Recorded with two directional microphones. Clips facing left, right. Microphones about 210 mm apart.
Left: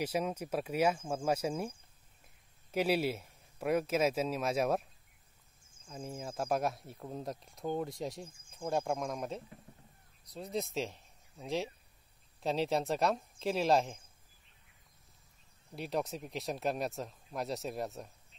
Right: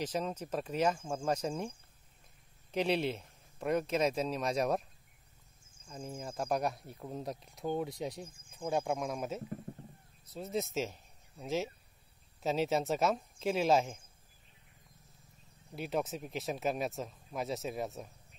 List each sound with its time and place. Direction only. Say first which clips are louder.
0.0 s speech: left 2 dB; 10° left (ahead or behind)
2.7 s speech: left 1 dB; 5° left (ahead or behind)
5.9 s speech: even; centre (ahead or behind)
15.7 s speech: right 1 dB; centre (ahead or behind)